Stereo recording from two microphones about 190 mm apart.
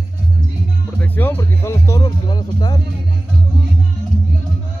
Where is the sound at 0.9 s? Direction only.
10° left (ahead or behind).